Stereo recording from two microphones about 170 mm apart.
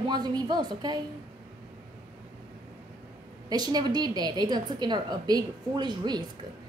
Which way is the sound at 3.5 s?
25° right (ahead or behind).